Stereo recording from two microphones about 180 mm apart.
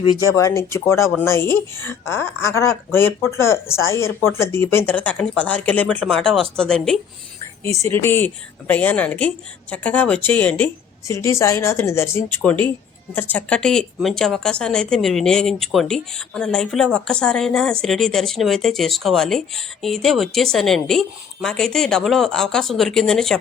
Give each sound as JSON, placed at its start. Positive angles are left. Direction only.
{"t": 0.3, "sound": "speech", "side_deg": 15}
{"t": 7.6, "sound": "a woman's voice", "side_deg": 15}